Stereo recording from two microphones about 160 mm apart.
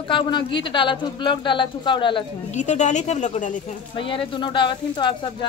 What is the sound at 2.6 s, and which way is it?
Speech, 50° left (ahead or behind).